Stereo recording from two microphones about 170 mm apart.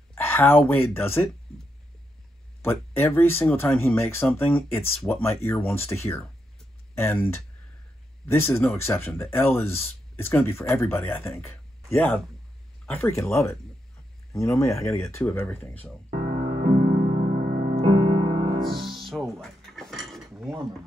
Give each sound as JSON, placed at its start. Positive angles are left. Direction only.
{"t": 0.1, "sound": "speech", "side_deg": 10}
{"t": 2.6, "sound": "speech", "side_deg": 15}
{"t": 16.1, "sound": "music", "side_deg": -40}
{"t": 18.8, "sound": "music", "side_deg": 0}
{"t": 19.4, "sound": "dishes", "side_deg": 0}
{"t": 20.3, "sound": "mechanisms", "side_deg": -15}